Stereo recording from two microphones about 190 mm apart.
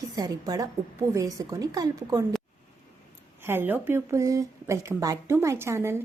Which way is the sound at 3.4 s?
10° right (ahead or behind).